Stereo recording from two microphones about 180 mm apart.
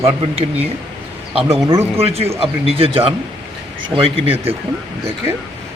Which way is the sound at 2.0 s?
35° right (ahead or behind).